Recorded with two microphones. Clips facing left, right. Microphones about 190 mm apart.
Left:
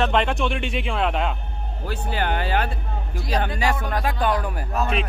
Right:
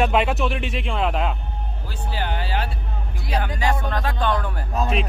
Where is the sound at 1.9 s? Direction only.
60° left (ahead or behind).